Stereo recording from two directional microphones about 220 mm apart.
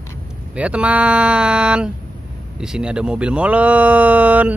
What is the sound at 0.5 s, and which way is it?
Speech, 5° right (ahead or behind).